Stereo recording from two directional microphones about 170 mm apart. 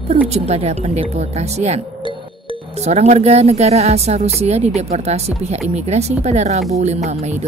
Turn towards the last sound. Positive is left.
turn(degrees=-40)  # may be behind; listen again after turning